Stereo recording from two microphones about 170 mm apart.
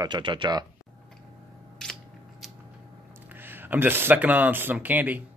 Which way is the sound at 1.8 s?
5° left (ahead or behind).